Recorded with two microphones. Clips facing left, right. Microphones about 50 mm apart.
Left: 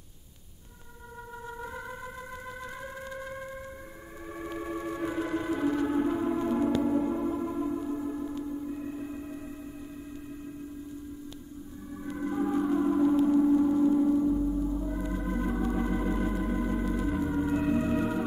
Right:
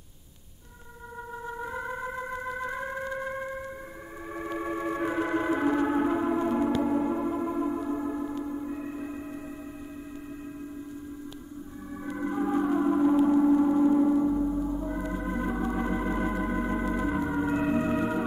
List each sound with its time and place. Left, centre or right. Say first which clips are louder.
1.4 s music: right 5 dB; centre
4.3 s organ: right 3 dB; centre
12.1 s gong: right 1 dB; centre